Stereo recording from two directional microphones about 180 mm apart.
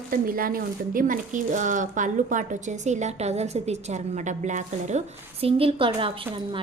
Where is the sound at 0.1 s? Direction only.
50° right (ahead or behind).